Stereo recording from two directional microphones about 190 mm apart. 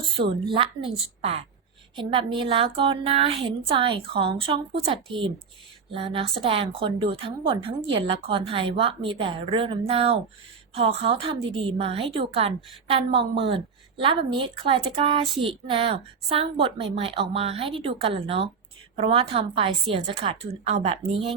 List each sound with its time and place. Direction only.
0.5 s a woman's voice: 30° right (ahead or behind)